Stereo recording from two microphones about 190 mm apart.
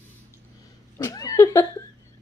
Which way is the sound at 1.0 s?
15° left (ahead or behind).